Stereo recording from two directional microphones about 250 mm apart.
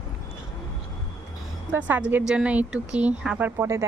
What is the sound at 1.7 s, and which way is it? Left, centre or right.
A woman's voice, centre.